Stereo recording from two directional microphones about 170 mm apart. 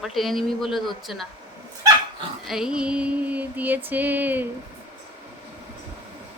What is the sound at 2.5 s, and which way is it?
Female singing, 5° right (ahead or behind).